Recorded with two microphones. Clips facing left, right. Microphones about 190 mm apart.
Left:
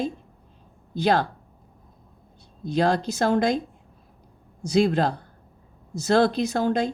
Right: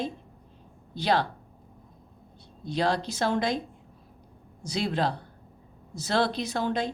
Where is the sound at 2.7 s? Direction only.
45° left (ahead or behind).